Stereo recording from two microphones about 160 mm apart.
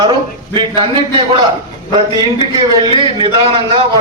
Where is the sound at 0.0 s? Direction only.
30° right (ahead or behind).